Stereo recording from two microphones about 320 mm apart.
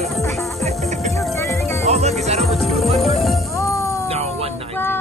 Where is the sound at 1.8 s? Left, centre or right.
Centre.